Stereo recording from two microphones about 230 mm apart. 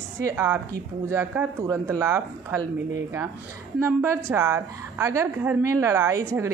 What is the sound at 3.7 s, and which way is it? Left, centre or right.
A woman's voice, centre.